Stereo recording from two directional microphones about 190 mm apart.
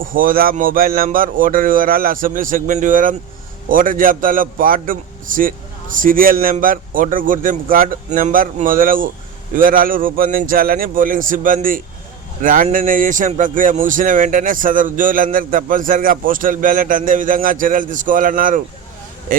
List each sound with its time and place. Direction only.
0.0 s a man's voice: 45° right (ahead or behind)